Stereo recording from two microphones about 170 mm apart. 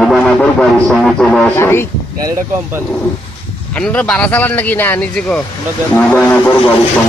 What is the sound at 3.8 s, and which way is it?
Speech, 5° left (ahead or behind).